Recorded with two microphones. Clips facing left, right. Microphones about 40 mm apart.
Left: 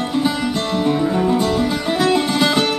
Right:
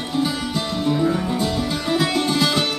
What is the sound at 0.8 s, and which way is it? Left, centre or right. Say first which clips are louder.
Music: left 2 dB; left.